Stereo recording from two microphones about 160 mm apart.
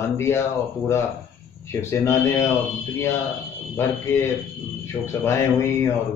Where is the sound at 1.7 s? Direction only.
15° left (ahead or behind).